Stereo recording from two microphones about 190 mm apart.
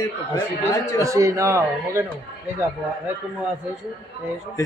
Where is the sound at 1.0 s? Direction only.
15° right (ahead or behind).